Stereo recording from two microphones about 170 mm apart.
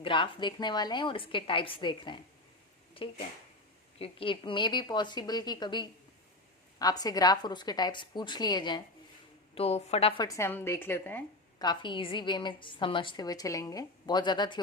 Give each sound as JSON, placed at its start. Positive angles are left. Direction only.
{"t": 0.0, "sound": "a woman's voice", "side_deg": 30}
{"t": 9.6, "sound": "a woman's voice", "side_deg": 35}
{"t": 10.2, "sound": "a woman's voice", "side_deg": 15}
{"t": 11.6, "sound": "a woman's voice", "side_deg": 25}